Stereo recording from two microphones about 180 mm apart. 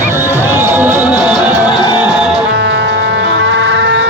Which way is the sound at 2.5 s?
70° right (ahead or behind).